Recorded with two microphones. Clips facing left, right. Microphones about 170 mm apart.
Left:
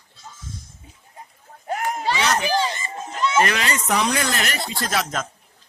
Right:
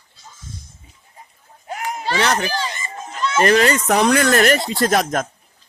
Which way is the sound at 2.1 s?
60° right (ahead or behind).